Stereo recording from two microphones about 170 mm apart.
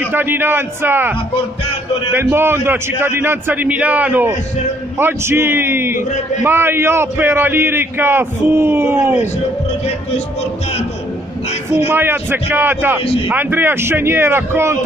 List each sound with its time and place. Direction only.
0.0 s a man's voice: 10° right (ahead or behind)
2.1 s a man's voice: 15° right (ahead or behind)
11.9 s a man's voice: 15° right (ahead or behind)
13.0 s a man's voice: 35° left (ahead or behind)
13.3 s a man's voice: 10° right (ahead or behind)